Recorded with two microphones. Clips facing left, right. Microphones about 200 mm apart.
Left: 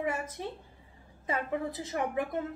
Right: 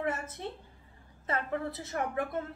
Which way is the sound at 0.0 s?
10° left (ahead or behind).